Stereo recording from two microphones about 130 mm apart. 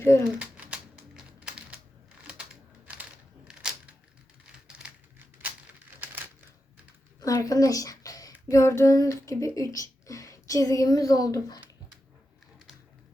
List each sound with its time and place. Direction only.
0.3 s crumpling: 10° right (ahead or behind)
2.8 s crushing: 10° right (ahead or behind)
4.8 s typewriter: 10° right (ahead or behind)
7.2 s a sound: 25° left (ahead or behind)
8.4 s female singing: 25° left (ahead or behind)
9.3 s a woman's voice: 25° left (ahead or behind)